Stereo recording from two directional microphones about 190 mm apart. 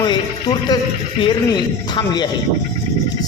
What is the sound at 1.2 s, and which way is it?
A woman's voice, 25° left (ahead or behind).